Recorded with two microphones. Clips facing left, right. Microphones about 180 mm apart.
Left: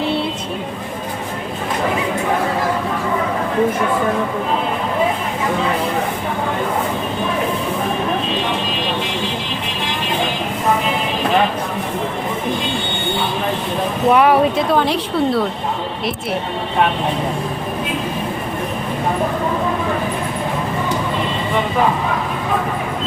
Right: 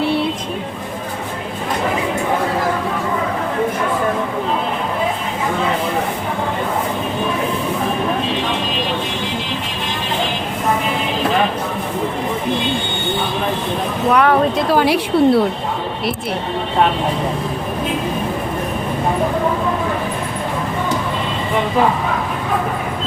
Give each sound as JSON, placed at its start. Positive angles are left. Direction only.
{"t": 14.1, "sound": "speech", "side_deg": 20}
{"t": 14.5, "sound": "a woman's voice", "side_deg": -5}